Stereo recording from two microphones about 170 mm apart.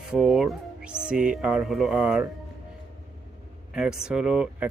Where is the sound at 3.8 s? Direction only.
5° right (ahead or behind).